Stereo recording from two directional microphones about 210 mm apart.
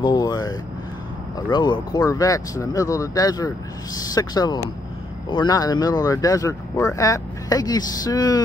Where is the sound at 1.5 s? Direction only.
20° left (ahead or behind).